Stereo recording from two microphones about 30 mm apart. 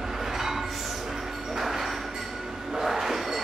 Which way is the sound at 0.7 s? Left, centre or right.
Centre.